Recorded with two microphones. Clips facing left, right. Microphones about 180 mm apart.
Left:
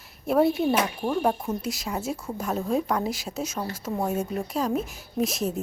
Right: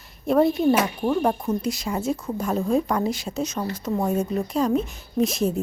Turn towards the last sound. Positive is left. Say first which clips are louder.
# right 4 dB
turn(degrees=0)  # may be behind; listen again after turning